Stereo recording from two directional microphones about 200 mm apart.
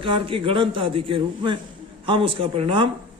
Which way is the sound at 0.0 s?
25° right (ahead or behind).